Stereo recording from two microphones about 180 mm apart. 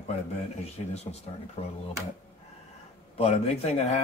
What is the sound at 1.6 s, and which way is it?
Speech, 35° left (ahead or behind).